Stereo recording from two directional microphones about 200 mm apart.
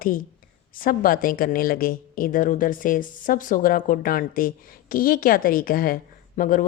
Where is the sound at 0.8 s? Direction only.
45° left (ahead or behind).